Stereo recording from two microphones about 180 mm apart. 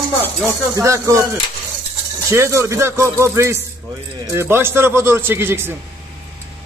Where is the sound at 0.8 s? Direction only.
15° right (ahead or behind).